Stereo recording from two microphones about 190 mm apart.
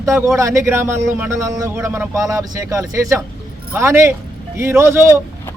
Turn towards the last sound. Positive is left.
turn(degrees=-15)  # may be behind; listen again after turning